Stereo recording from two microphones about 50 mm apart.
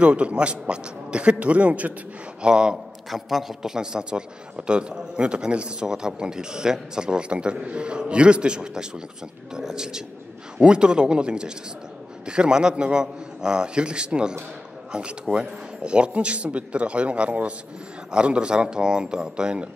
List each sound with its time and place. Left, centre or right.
0.0 s a man's voice: right
2.4 s a man's voice: centre
3.1 s a man's voice: centre